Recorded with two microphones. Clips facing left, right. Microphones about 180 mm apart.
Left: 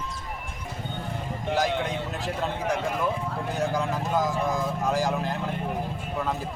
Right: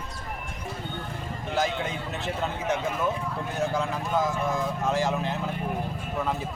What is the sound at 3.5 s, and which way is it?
Speech, centre (ahead or behind).